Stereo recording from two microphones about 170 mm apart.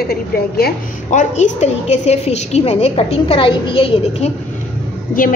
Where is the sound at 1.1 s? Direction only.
45° left (ahead or behind).